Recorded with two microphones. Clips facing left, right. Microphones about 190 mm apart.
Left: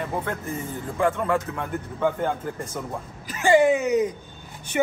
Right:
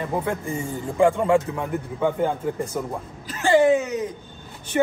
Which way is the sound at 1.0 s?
15° right (ahead or behind).